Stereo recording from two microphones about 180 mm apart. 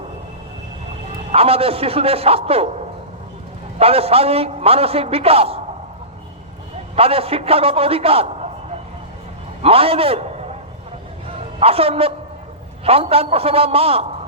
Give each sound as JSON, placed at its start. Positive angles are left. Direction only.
{"t": 1.3, "sound": "a man's voice", "side_deg": -35}
{"t": 3.8, "sound": "a man's voice", "side_deg": -35}
{"t": 6.9, "sound": "a man's voice", "side_deg": -35}
{"t": 9.6, "sound": "a man's voice", "side_deg": -30}
{"t": 11.6, "sound": "a man's voice", "side_deg": -35}